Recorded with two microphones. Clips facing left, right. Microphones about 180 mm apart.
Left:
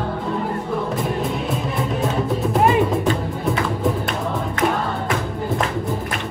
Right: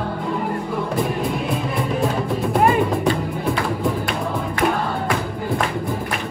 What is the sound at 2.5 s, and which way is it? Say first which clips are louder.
Music: even; centre (ahead or behind).